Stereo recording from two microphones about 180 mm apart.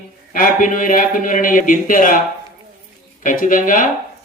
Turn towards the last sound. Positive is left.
turn(degrees=50)  # may be behind; listen again after turning